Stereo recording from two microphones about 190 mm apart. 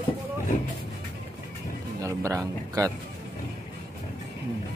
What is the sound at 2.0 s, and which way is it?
Speech, 15° right (ahead or behind).